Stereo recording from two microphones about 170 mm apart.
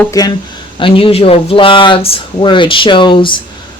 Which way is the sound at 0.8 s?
30° left (ahead or behind).